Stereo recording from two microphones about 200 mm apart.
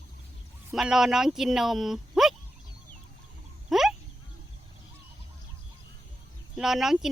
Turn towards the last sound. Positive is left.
turn(degrees=0)  # may be behind; listen again after turning